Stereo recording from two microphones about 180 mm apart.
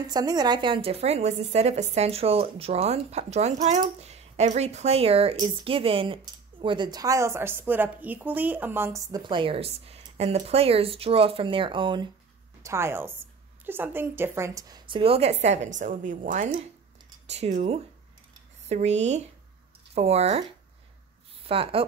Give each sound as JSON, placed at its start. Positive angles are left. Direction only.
{"t": 0.0, "sound": "a woman's voice", "side_deg": -20}
{"t": 12.6, "sound": "a woman's voice", "side_deg": -15}
{"t": 21.5, "sound": "a woman's voice", "side_deg": -30}